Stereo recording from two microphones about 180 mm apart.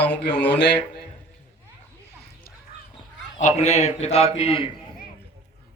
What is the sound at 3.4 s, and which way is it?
A man's voice, 40° left (ahead or behind).